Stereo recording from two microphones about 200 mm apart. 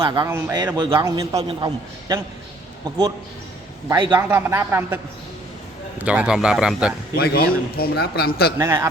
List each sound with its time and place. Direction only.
0.0 s a man's voice: 20° right (ahead or behind)
3.8 s a man's voice: 20° right (ahead or behind)
6.0 s speech: 5° right (ahead or behind)
7.2 s a man's voice: 50° left (ahead or behind)
8.5 s a man's voice: 15° right (ahead or behind)